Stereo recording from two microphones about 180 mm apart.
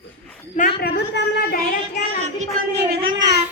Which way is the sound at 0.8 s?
65° left (ahead or behind).